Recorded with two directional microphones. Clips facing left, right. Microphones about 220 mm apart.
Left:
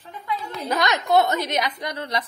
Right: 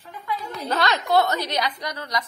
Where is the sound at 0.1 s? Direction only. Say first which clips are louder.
Left 1 dB; 30° left (ahead or behind).